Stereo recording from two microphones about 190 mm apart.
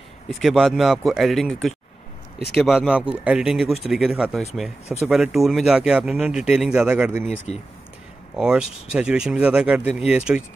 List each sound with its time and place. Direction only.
0.3 s speech: centre (ahead or behind)
7.5 s speech: 30° left (ahead or behind)
8.4 s speech: 5° right (ahead or behind)